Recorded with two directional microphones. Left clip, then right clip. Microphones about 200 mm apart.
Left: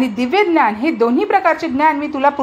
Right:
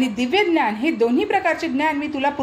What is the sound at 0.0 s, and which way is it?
A woman's voice, 10° left (ahead or behind).